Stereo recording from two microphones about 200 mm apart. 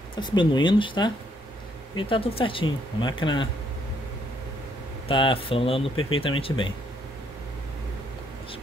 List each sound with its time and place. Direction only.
0.1 s speech: 20° left (ahead or behind)
5.0 s speech: 25° left (ahead or behind)